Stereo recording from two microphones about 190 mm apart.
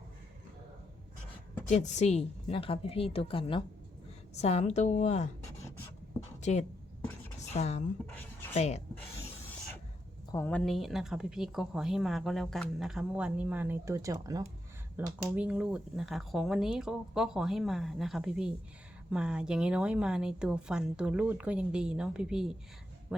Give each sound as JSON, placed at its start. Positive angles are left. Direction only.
{"t": 1.6, "sound": "a woman's voice", "side_deg": 40}
{"t": 6.4, "sound": "speech", "side_deg": 40}
{"t": 7.3, "sound": "a sound", "side_deg": 35}
{"t": 8.1, "sound": "writing", "side_deg": 10}
{"t": 8.5, "sound": "a woman's voice", "side_deg": 35}
{"t": 10.3, "sound": "speech", "side_deg": 10}
{"t": 15.4, "sound": "speech", "side_deg": -5}